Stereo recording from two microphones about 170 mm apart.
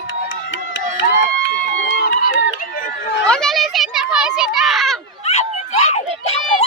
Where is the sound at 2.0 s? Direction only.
70° left (ahead or behind).